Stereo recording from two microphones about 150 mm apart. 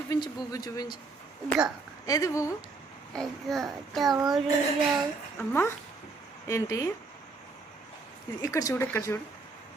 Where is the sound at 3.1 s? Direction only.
5° left (ahead or behind).